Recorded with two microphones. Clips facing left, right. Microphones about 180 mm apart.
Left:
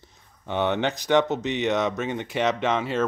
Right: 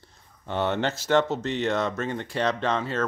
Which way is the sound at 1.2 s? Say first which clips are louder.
Left 1 dB; 20° left (ahead or behind).